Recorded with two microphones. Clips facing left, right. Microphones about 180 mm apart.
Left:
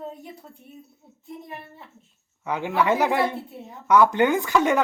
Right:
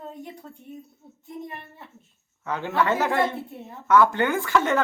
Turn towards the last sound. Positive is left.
turn(degrees=15)  # may be behind; listen again after turning